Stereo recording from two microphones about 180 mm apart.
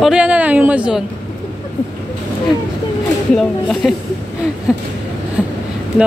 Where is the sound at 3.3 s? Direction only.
Centre (ahead or behind).